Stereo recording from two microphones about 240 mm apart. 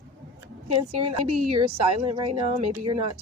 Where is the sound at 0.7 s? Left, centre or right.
Right.